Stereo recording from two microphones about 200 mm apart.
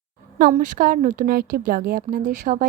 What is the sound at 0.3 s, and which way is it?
Speech, 40° right (ahead or behind).